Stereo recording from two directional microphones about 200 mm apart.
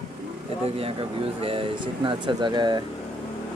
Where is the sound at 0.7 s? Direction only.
30° right (ahead or behind).